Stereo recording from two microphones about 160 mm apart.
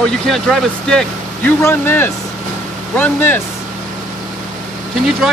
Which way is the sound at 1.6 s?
15° left (ahead or behind).